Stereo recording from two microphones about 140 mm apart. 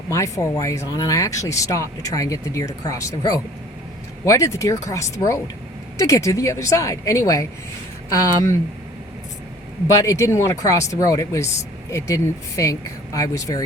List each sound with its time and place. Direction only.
0.1 s speech: 20° left (ahead or behind)
9.8 s speech: 20° left (ahead or behind)